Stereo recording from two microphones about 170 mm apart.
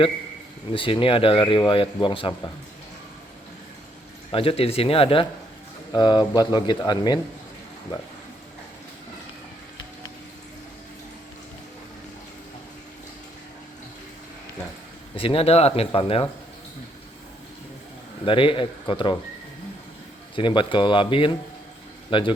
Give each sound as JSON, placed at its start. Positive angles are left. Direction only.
{"t": 0.7, "sound": "speech", "side_deg": 30}
{"t": 4.3, "sound": "speech", "side_deg": 35}
{"t": 15.1, "sound": "speech", "side_deg": 30}
{"t": 18.3, "sound": "speech", "side_deg": 30}
{"t": 20.3, "sound": "speech", "side_deg": 30}